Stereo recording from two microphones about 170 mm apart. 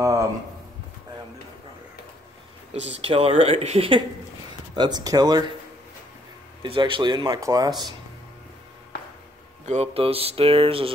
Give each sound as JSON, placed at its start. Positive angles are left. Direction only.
{"t": 0.0, "sound": "a sound", "side_deg": -20}
{"t": 3.0, "sound": "speech", "side_deg": -35}
{"t": 6.6, "sound": "speech", "side_deg": -30}
{"t": 9.7, "sound": "speech", "side_deg": -35}